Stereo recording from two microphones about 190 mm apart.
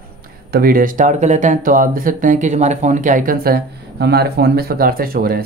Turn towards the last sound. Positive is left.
turn(degrees=-50)  # may be behind; listen again after turning